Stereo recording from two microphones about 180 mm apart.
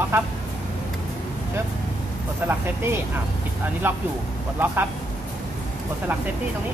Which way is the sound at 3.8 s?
10° right (ahead or behind).